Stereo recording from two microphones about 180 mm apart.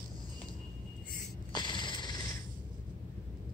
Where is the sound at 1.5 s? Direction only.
25° left (ahead or behind).